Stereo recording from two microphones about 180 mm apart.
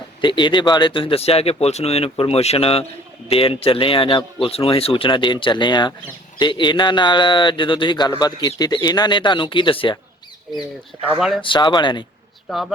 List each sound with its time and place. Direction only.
0.2 s a man's voice: 25° left (ahead or behind)
11.3 s a man's voice: 25° left (ahead or behind)